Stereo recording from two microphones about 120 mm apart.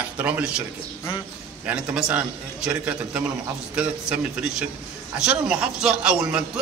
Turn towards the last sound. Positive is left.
turn(degrees=-5)  # may be behind; listen again after turning